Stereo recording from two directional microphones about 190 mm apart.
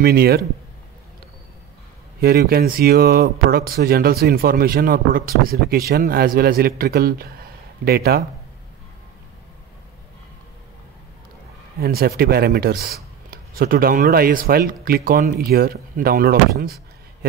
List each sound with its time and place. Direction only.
0.0 s speech: 55° right (ahead or behind)
2.1 s speech: 55° right (ahead or behind)
11.8 s speech: 55° right (ahead or behind)